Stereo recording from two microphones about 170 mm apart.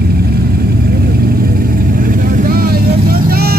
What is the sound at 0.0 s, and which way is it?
Vehicle, 65° right (ahead or behind).